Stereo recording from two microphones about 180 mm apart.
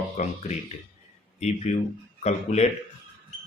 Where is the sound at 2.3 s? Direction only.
40° left (ahead or behind).